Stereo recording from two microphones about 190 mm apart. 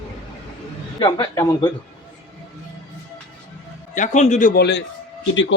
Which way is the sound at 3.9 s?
40° left (ahead or behind).